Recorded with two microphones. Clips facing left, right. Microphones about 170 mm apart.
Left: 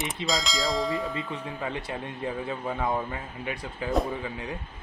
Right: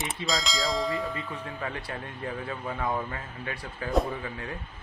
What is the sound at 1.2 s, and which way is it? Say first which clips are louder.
Speech: left 2 dB; 20° left (ahead or behind).